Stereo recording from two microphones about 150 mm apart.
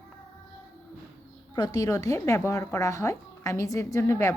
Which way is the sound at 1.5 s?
25° left (ahead or behind).